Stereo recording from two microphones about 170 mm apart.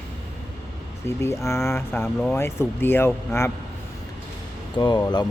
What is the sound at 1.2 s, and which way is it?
Speech, 15° left (ahead or behind).